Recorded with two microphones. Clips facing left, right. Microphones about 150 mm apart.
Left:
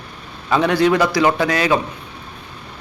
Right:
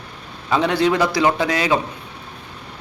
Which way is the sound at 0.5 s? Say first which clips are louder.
Left 2 dB; 25° right (ahead or behind).